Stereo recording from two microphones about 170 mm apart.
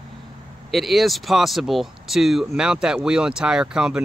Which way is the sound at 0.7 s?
Centre (ahead or behind).